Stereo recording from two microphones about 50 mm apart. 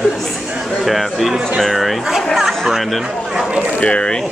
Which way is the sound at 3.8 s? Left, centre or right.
Left.